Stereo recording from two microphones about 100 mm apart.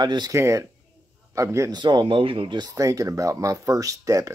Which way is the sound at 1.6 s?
45° right (ahead or behind).